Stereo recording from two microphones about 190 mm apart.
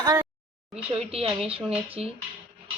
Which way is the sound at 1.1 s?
30° right (ahead or behind).